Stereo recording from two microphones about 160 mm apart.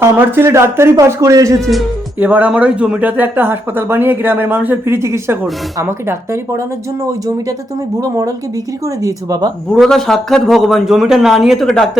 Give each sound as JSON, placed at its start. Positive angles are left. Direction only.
{"t": 0.0, "sound": "speech", "side_deg": -15}
{"t": 2.1, "sound": "speech", "side_deg": -10}
{"t": 8.0, "sound": "speech", "side_deg": -20}
{"t": 9.8, "sound": "a man's voice", "side_deg": 0}